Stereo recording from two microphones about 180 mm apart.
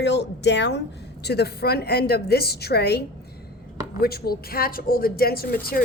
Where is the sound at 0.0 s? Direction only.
75° left (ahead or behind).